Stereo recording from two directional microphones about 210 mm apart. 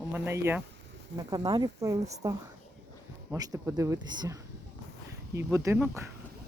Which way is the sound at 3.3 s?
15° right (ahead or behind).